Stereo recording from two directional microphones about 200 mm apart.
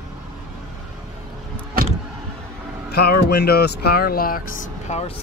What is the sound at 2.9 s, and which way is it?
Speech, 50° left (ahead or behind).